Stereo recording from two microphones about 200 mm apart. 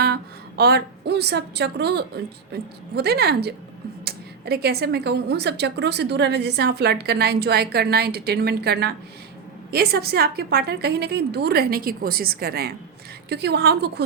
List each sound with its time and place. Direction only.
0.0 s a woman's voice: 55° right (ahead or behind)